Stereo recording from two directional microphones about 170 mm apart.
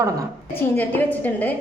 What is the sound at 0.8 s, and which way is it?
Speech, 10° left (ahead or behind).